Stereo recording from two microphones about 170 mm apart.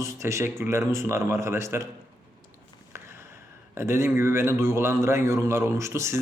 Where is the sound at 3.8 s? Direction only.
15° right (ahead or behind).